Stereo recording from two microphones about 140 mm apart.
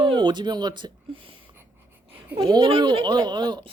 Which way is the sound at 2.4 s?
40° right (ahead or behind).